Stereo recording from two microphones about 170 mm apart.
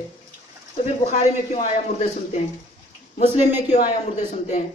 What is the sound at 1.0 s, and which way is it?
Speech, 45° left (ahead or behind).